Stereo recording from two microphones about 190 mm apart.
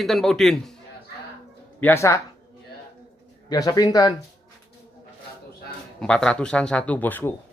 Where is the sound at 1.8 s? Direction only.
15° left (ahead or behind).